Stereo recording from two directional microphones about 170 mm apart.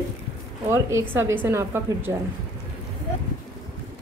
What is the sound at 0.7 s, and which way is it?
A woman's voice, 15° right (ahead or behind).